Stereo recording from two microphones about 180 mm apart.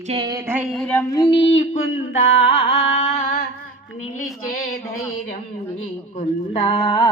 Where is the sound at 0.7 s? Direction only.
5° left (ahead or behind).